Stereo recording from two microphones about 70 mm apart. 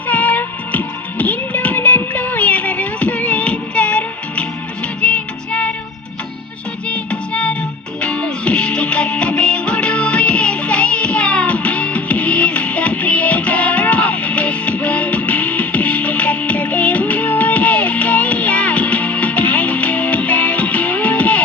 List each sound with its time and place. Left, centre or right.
0.1 s music: left
6.8 s music: centre